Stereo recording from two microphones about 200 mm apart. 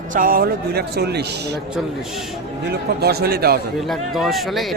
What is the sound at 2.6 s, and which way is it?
Speech, 55° right (ahead or behind).